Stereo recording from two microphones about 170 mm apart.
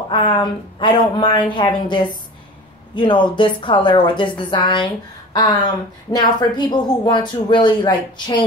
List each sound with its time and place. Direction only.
0.1 s a woman's voice: 25° left (ahead or behind)